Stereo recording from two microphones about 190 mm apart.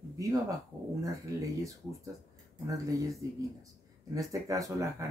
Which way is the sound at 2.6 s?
15° right (ahead or behind).